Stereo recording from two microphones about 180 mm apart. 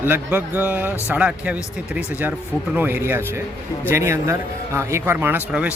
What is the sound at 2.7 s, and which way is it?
A man's voice, 10° right (ahead or behind).